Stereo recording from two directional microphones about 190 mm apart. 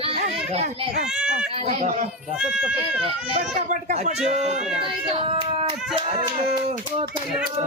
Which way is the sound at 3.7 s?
40° right (ahead or behind).